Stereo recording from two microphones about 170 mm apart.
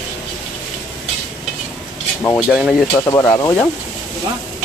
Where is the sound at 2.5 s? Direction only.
Centre (ahead or behind).